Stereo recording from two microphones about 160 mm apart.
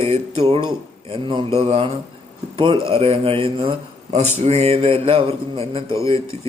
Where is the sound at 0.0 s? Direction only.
40° right (ahead or behind).